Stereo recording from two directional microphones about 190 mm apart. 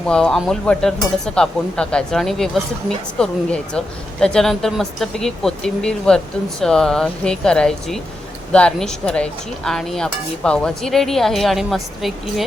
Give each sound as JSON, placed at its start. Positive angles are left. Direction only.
{"t": 0.0, "sound": "speech", "side_deg": 5}